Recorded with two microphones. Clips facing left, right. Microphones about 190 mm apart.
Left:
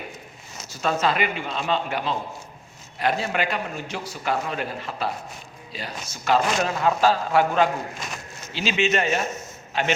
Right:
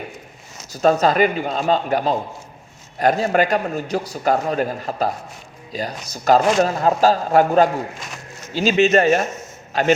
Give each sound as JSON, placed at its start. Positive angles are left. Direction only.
{"t": 0.7, "sound": "a man's voice", "side_deg": -40}